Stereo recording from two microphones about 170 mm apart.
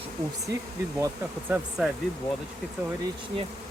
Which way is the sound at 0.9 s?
10° right (ahead or behind).